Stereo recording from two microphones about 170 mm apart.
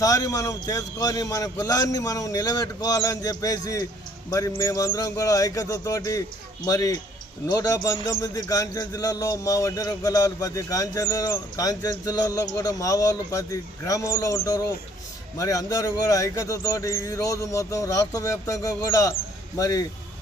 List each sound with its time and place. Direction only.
0.0 s a man's voice: 20° left (ahead or behind)